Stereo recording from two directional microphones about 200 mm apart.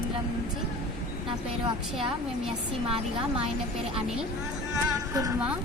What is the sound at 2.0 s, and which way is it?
A woman's voice, 25° right (ahead or behind).